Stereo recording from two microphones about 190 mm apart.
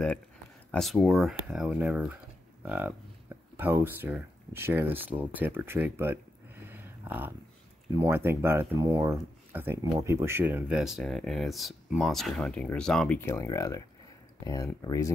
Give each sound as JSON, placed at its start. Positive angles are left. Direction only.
{"t": 0.7, "sound": "speech", "side_deg": 0}
{"t": 2.6, "sound": "cattle", "side_deg": -10}
{"t": 3.5, "sound": "speech", "side_deg": -10}
{"t": 6.6, "sound": "a sound", "side_deg": -10}
{"t": 7.9, "sound": "speech", "side_deg": -15}
{"t": 13.2, "sound": "speech", "side_deg": 15}